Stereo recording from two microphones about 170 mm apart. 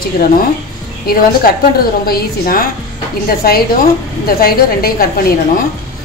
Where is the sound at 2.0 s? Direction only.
60° left (ahead or behind).